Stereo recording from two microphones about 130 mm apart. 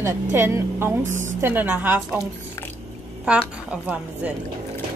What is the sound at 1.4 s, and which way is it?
Speech, 15° right (ahead or behind).